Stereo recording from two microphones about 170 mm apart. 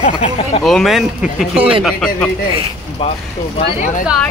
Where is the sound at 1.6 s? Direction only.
30° right (ahead or behind).